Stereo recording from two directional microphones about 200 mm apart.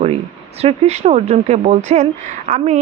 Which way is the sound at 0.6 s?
35° right (ahead or behind).